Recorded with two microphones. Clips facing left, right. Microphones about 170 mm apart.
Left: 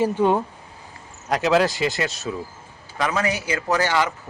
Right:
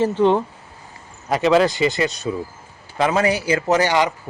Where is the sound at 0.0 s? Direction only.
10° left (ahead or behind).